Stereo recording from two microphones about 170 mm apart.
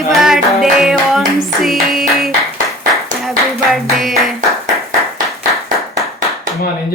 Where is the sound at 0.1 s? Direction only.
Centre (ahead or behind).